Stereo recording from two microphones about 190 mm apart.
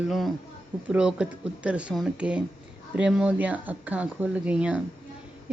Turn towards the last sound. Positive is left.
turn(degrees=-5)  # may be behind; listen again after turning